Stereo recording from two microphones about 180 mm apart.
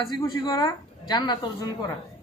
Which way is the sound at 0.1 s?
20° left (ahead or behind).